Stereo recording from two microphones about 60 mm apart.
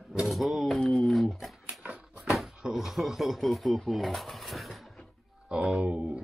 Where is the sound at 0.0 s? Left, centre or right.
Centre.